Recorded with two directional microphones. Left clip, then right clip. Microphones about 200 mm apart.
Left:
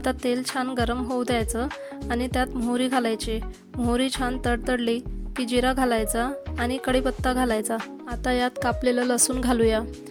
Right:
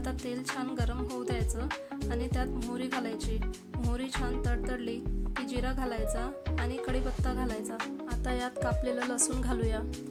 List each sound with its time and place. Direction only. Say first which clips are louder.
0.0 s speech: left 11 dB; 45° left (ahead or behind)
8.2 s music: left 10 dB; 40° left (ahead or behind)